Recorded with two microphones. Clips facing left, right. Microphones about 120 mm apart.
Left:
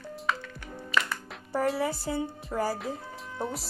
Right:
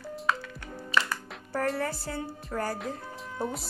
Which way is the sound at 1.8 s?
15° left (ahead or behind).